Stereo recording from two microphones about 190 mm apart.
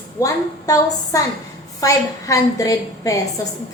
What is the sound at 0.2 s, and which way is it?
A woman's voice, 20° left (ahead or behind).